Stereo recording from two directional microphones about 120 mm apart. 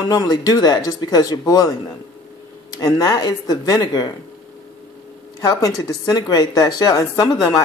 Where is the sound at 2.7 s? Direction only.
35° left (ahead or behind).